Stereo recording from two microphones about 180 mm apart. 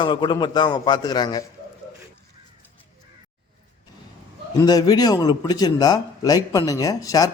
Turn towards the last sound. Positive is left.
turn(degrees=20)  # may be behind; listen again after turning